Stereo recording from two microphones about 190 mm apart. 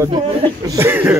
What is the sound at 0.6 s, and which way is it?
Speech, 15° right (ahead or behind).